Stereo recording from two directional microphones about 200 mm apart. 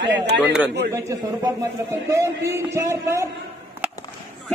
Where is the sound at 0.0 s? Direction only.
60° right (ahead or behind).